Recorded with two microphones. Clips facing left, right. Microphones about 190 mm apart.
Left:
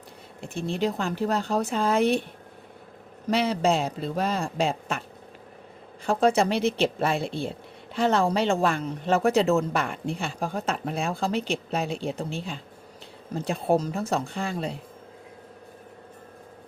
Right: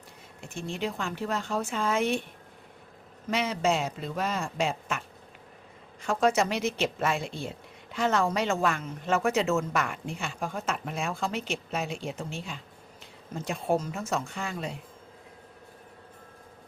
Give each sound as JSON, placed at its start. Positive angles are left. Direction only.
{"t": 0.4, "sound": "speech", "side_deg": 35}
{"t": 3.2, "sound": "speech", "side_deg": 35}
{"t": 6.1, "sound": "speech", "side_deg": 30}